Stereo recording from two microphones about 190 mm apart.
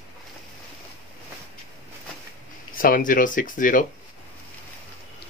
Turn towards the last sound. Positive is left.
turn(degrees=45)  # may be behind; listen again after turning